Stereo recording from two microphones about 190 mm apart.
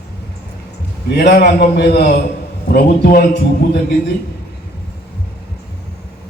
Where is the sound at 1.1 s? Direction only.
55° left (ahead or behind).